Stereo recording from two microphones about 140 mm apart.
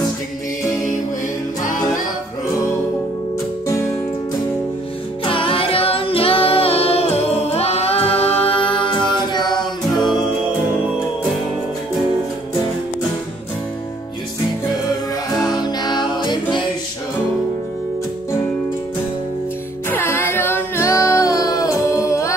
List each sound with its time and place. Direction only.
1.6 s music: 70° left (ahead or behind)
3.6 s music: 20° left (ahead or behind)
5.2 s music: 40° left (ahead or behind)
15.3 s music: 25° left (ahead or behind)
19.9 s music: 15° left (ahead or behind)